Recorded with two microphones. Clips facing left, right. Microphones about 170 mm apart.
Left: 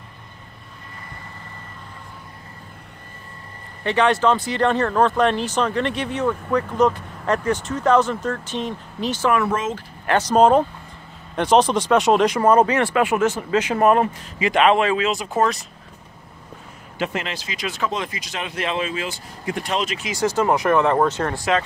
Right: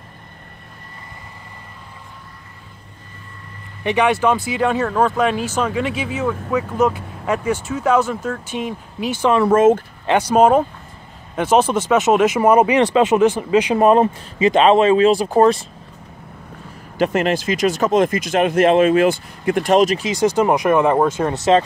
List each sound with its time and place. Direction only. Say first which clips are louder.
3.8 s speech: right 1 dB; 15° right (ahead or behind)
9.5 s speech: right 12 dB; 50° right (ahead or behind)
10.0 s speech: right 2 dB; 10° right (ahead or behind); by 15.6 s 30° right (ahead or behind)
17.0 s speech: right 9 dB; 45° right (ahead or behind)
20.1 s speech: right 4 dB; 15° right (ahead or behind)